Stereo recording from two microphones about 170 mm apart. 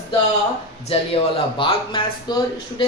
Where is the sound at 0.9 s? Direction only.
35° left (ahead or behind).